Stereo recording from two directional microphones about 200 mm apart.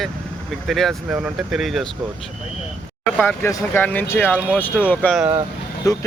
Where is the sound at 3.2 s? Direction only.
10° left (ahead or behind).